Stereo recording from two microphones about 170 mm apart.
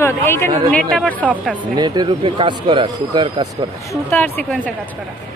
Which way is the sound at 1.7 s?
25° right (ahead or behind).